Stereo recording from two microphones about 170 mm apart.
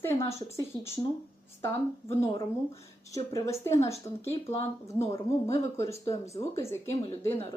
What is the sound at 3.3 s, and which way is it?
Speech, 15° left (ahead or behind).